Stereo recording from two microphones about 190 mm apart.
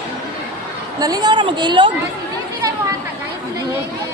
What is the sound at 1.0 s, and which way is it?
Speech, 20° right (ahead or behind).